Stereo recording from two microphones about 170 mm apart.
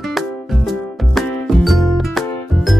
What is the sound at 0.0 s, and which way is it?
Music, centre (ahead or behind).